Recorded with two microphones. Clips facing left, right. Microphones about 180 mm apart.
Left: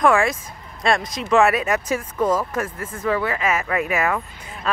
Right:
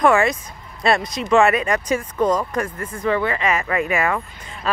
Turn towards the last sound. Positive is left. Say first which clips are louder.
# right 1 dB
turn(degrees=0)  # may be behind; listen again after turning